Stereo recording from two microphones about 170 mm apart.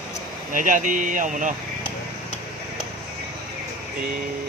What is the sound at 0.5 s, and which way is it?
Speech, 50° right (ahead or behind).